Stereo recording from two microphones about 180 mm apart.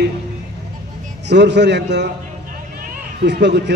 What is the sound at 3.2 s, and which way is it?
Speech, 70° right (ahead or behind).